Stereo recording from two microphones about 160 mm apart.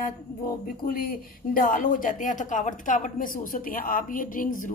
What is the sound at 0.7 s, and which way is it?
Speech, 65° left (ahead or behind).